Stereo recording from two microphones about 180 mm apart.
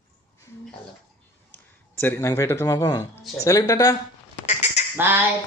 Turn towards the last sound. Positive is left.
turn(degrees=-10)  # may be behind; listen again after turning